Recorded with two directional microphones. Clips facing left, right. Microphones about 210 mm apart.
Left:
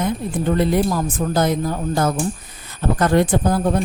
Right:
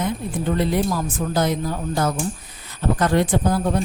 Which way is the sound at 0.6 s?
50° left (ahead or behind).